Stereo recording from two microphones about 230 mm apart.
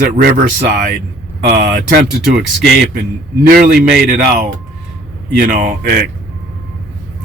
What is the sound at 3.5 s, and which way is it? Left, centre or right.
Speech, right.